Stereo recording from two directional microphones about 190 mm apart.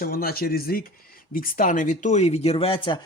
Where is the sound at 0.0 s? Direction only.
50° left (ahead or behind).